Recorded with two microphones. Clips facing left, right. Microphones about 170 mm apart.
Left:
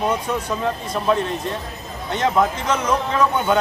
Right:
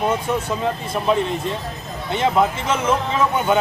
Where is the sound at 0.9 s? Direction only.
10° right (ahead or behind).